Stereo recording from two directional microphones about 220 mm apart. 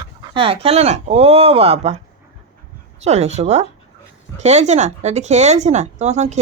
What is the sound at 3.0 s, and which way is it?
Speech, 30° right (ahead or behind).